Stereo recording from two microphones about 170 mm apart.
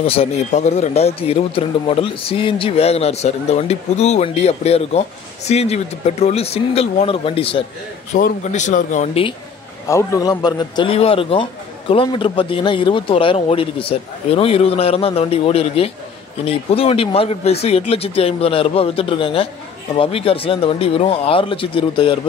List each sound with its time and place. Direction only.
0.0 s speech: 35° left (ahead or behind)
8.1 s speech: 55° left (ahead or behind)
9.8 s a man's voice: 20° left (ahead or behind)